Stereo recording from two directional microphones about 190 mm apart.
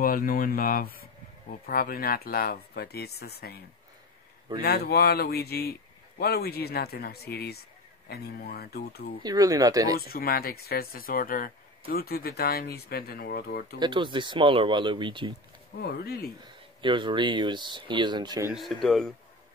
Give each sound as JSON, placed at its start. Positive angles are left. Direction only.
{"t": 0.0, "sound": "speech", "side_deg": 50}
{"t": 9.2, "sound": "speech", "side_deg": -20}
{"t": 9.9, "sound": "speech", "side_deg": 55}
{"t": 13.7, "sound": "speech", "side_deg": -25}
{"t": 15.8, "sound": "speech", "side_deg": 55}
{"t": 16.8, "sound": "speech", "side_deg": -25}
{"t": 18.5, "sound": "speech", "side_deg": 0}